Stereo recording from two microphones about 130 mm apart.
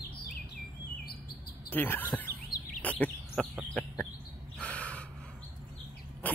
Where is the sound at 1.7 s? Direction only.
15° left (ahead or behind).